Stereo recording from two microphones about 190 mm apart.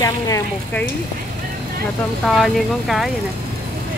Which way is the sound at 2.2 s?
Centre (ahead or behind).